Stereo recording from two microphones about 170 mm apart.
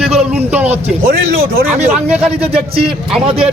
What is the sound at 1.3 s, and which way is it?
Speech, 60° right (ahead or behind).